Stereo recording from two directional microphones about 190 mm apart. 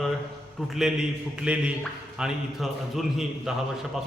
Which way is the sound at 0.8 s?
5° right (ahead or behind).